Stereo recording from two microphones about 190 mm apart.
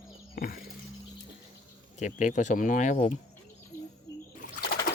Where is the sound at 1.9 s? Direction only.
40° left (ahead or behind).